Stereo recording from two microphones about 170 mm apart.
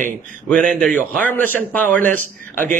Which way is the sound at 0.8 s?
5° left (ahead or behind).